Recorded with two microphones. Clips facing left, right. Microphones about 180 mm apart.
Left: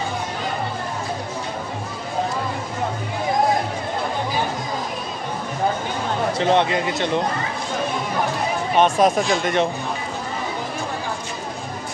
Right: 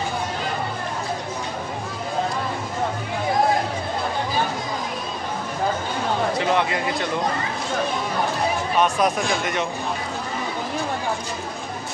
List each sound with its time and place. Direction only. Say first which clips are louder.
6.4 s speech: left 3 dB; 25° left (ahead or behind)
8.7 s speech: left 5 dB; 25° left (ahead or behind)